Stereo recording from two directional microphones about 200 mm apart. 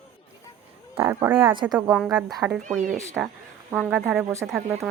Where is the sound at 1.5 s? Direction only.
25° right (ahead or behind).